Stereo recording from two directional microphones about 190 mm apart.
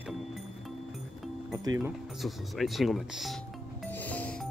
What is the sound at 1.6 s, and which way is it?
Speech, 20° right (ahead or behind).